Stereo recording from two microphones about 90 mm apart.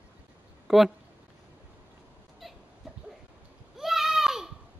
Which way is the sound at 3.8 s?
5° right (ahead or behind).